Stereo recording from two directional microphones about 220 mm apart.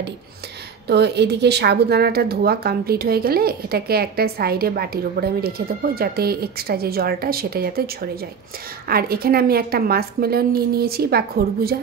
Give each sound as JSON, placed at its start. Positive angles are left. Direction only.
{"t": 0.8, "sound": "speech", "side_deg": -50}